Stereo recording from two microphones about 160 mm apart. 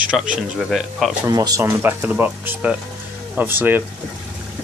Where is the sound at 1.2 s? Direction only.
25° right (ahead or behind).